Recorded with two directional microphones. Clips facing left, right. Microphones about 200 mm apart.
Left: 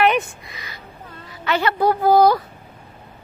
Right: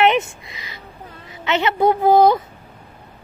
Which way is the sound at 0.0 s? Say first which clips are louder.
Right 2 dB; 25° right (ahead or behind).